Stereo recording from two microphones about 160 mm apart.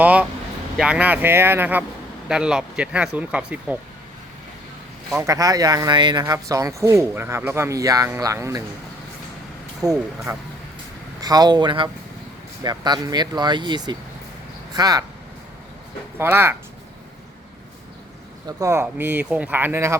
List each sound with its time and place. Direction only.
0.0 s speech: 10° right (ahead or behind)
5.1 s speech: 20° right (ahead or behind)
9.8 s speech: 20° right (ahead or behind)
16.1 s speech: 15° right (ahead or behind)
18.4 s speech: 20° right (ahead or behind)